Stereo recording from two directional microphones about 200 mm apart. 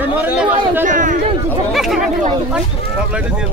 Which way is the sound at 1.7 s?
Centre (ahead or behind).